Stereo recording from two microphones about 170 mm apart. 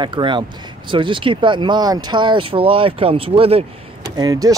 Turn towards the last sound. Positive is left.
turn(degrees=-20)  # may be behind; listen again after turning